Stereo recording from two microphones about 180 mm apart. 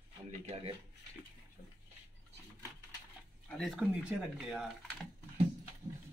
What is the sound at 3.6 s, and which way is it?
Speech, centre (ahead or behind).